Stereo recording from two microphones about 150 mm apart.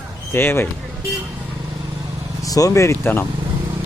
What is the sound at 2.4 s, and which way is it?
Speech, 25° left (ahead or behind).